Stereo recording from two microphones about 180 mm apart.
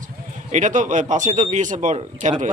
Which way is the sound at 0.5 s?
45° right (ahead or behind).